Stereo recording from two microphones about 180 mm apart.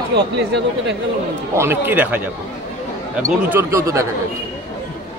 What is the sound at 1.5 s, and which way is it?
Speech, 15° right (ahead or behind).